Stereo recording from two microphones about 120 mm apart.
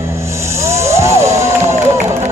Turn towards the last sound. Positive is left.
turn(degrees=-25)  # may be behind; listen again after turning